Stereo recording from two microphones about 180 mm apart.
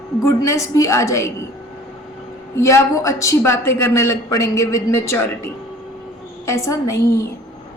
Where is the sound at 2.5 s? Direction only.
15° left (ahead or behind).